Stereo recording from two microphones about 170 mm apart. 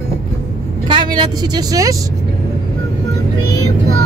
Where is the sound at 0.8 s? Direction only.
25° right (ahead or behind).